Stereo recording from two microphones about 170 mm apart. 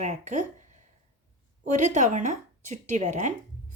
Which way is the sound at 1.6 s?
45° right (ahead or behind).